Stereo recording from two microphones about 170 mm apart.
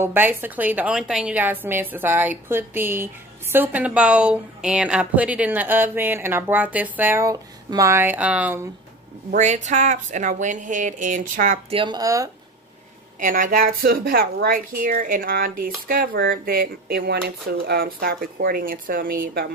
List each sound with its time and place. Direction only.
0.0 s a woman's voice: 10° right (ahead or behind)
9.3 s speech: 45° right (ahead or behind)
11.7 s speech: 25° right (ahead or behind)
13.2 s a woman's voice: 55° right (ahead or behind)